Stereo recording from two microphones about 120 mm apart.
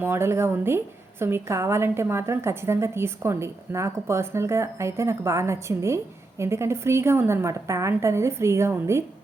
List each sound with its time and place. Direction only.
0.0 s a woman's voice: 20° right (ahead or behind)